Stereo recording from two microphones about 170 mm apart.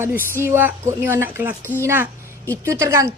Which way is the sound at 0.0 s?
10° right (ahead or behind).